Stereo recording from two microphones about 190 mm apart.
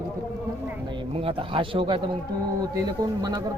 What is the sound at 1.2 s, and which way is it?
Speech, 30° right (ahead or behind).